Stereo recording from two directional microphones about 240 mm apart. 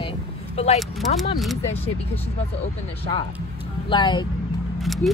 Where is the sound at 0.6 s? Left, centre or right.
Left.